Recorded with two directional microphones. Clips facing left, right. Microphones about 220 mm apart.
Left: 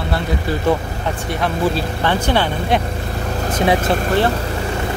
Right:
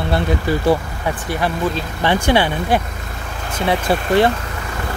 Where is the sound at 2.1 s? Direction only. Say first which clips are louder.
Right 3 dB; 10° right (ahead or behind).